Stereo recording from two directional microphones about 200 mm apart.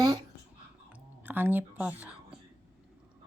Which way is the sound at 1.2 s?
10° right (ahead or behind).